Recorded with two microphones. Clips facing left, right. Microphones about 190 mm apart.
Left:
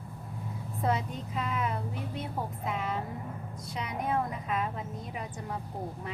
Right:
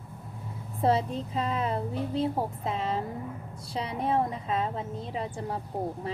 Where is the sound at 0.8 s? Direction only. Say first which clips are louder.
Right 6 dB; 30° right (ahead or behind).